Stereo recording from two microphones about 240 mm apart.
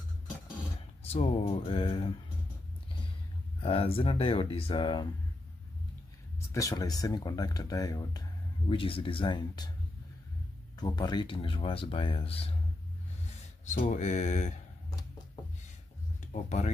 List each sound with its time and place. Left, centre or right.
1.0 s speech: left
3.6 s speech: left
6.5 s speech: centre
10.8 s speech: centre
13.7 s speech: left
16.4 s speech: left